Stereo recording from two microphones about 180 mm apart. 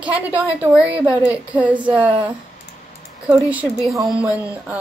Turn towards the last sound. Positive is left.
turn(degrees=-10)  # may be behind; listen again after turning